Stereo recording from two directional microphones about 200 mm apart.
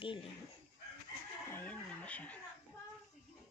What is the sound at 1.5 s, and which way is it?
Chicken, 10° left (ahead or behind).